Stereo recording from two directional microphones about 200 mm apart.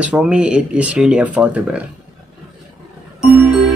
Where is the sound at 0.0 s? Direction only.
5° right (ahead or behind).